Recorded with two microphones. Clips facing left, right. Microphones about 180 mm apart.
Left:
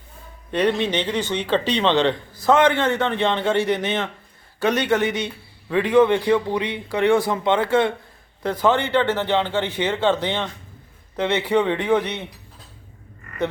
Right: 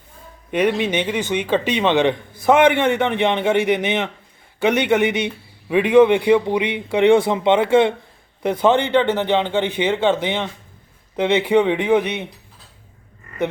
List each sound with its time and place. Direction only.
0.5 s a man's voice: 15° right (ahead or behind)